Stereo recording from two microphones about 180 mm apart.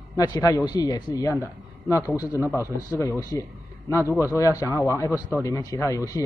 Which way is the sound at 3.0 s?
20° left (ahead or behind).